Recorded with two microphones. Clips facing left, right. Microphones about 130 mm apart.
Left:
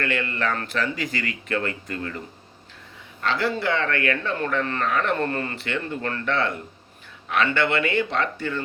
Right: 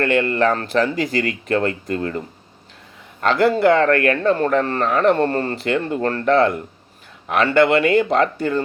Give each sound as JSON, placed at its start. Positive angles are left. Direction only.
{"t": 0.0, "sound": "speech", "side_deg": -40}
{"t": 3.2, "sound": "speech", "side_deg": -50}